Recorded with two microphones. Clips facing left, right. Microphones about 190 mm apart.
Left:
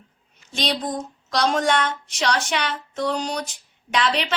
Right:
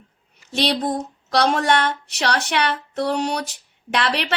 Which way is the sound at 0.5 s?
65° right (ahead or behind).